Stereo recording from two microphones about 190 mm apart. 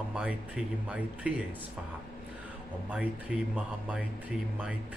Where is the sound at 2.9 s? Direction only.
5° right (ahead or behind).